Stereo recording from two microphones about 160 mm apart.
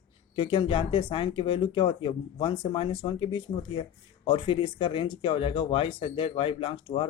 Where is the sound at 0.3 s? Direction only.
30° left (ahead or behind).